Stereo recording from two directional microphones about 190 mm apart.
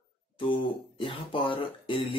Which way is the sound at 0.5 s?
25° left (ahead or behind).